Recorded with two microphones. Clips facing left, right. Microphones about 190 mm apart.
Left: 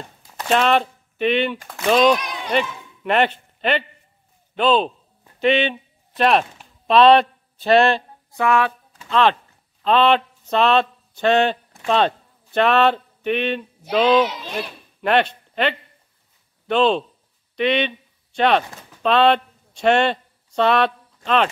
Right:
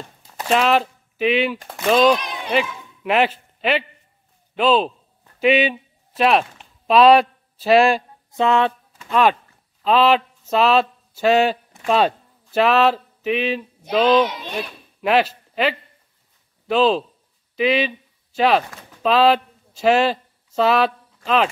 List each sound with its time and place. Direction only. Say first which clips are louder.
0.4 s speech: even; 5° right (ahead or behind)
2.1 s speech: even; 25° right (ahead or behind)
2.5 s a man's voice: even; 5° right (ahead or behind)
8.3 s speech: right 1 dB; 25° right (ahead or behind)
9.1 s a man's voice: right 1 dB; 10° right (ahead or behind)